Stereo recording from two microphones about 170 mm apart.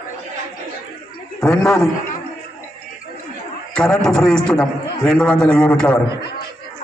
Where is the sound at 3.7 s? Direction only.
5° left (ahead or behind).